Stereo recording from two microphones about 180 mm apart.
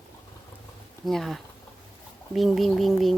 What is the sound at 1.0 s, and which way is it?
Speech, centre (ahead or behind).